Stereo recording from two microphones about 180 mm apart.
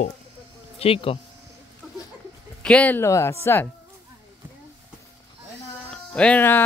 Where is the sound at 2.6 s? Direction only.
5° left (ahead or behind).